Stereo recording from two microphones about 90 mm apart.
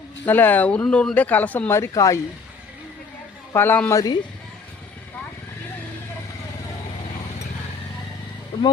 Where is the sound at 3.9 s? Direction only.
40° left (ahead or behind).